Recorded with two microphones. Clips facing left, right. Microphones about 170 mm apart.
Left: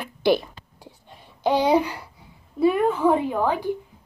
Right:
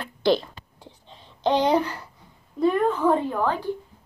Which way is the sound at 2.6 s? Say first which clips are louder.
Left 2 dB; 10° left (ahead or behind).